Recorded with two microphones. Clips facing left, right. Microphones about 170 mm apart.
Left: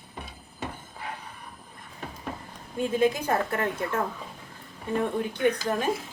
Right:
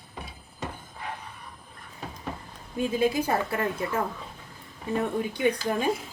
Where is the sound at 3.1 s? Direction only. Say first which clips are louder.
Right 1 dB; 10° right (ahead or behind).